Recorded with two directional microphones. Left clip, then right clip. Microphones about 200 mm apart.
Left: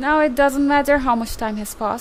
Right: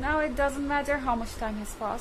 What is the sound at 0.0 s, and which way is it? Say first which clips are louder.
A woman's voice: left 10 dB; 55° left (ahead or behind).